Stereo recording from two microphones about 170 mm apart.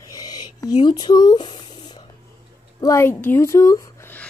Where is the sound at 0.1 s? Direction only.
20° left (ahead or behind).